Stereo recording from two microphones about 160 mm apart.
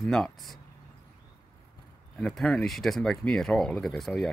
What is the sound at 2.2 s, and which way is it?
Speech, 5° left (ahead or behind).